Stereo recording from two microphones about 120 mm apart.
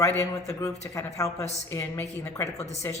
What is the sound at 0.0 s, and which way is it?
Speech, 25° left (ahead or behind).